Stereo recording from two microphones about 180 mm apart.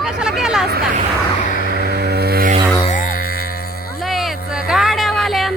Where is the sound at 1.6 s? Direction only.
65° right (ahead or behind).